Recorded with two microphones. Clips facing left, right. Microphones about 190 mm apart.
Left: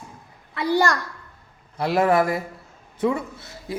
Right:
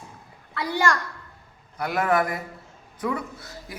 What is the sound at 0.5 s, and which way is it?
A woman's voice, 30° left (ahead or behind).